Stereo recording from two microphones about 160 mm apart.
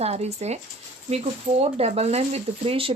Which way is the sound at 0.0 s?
40° right (ahead or behind).